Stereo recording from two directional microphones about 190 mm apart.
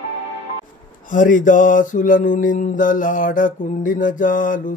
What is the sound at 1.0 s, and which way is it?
Mantra, 45° left (ahead or behind).